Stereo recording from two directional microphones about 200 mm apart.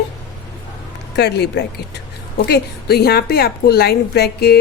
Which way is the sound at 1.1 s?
55° left (ahead or behind).